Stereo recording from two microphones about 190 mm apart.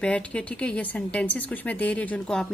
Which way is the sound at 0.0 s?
5° left (ahead or behind).